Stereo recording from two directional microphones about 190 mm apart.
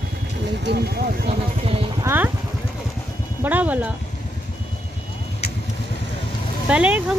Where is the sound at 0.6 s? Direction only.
60° right (ahead or behind).